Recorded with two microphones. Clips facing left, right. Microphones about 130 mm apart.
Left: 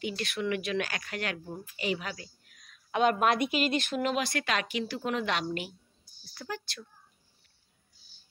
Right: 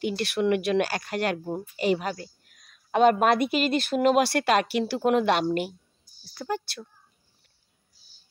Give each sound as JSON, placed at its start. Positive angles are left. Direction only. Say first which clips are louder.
{"t": 0.0, "sound": "speech", "louder": "right 7 dB", "side_deg": -55}
{"t": 0.8, "sound": "speech", "louder": "right 8 dB", "side_deg": -35}
{"t": 1.1, "sound": "a woman's voice", "louder": "right 9 dB", "side_deg": -50}
{"t": 6.2, "sound": "speech", "louder": "right 8 dB", "side_deg": -35}